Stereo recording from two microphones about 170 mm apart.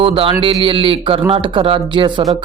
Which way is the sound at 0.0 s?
30° right (ahead or behind).